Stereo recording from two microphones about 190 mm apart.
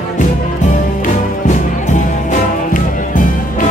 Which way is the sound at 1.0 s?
40° left (ahead or behind).